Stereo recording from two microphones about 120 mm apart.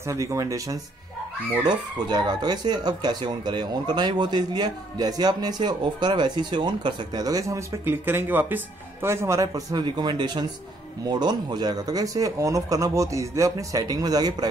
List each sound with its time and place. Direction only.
0.1 s speech: 25° right (ahead or behind)